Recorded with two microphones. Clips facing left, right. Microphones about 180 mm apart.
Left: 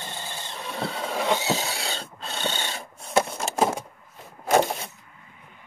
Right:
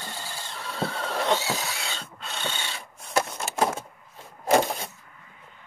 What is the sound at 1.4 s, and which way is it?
Mechanisms, 30° left (ahead or behind).